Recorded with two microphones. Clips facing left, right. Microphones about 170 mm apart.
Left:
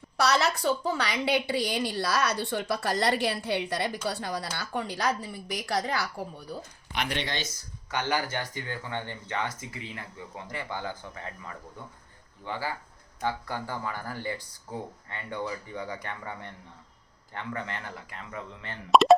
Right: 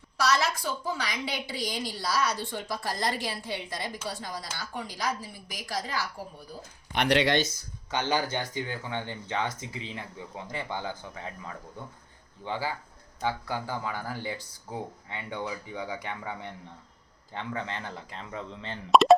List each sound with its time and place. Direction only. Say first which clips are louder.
0.3 s a woman's voice: left 2 dB; 65° left (ahead or behind)
6.9 s speech: right 8 dB; 70° right (ahead or behind)
7.9 s speech: right 1 dB; 25° right (ahead or behind); by 16.5 s 5° right (ahead or behind)
17.3 s speech: right 1 dB; 20° right (ahead or behind)
18.9 s speech: even; centre (ahead or behind)